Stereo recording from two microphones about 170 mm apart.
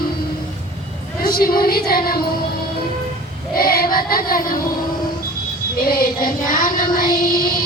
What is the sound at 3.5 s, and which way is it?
Child singing, 60° left (ahead or behind).